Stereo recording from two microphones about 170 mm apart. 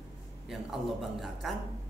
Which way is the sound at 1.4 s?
Centre (ahead or behind).